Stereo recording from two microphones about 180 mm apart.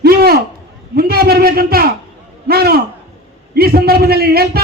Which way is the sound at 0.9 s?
55° right (ahead or behind).